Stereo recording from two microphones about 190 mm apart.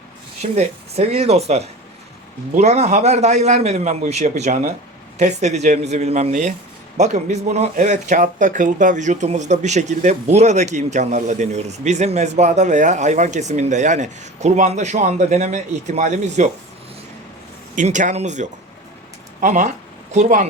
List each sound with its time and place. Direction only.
0.5 s speech: 35° right (ahead or behind)
17.7 s speech: 40° right (ahead or behind)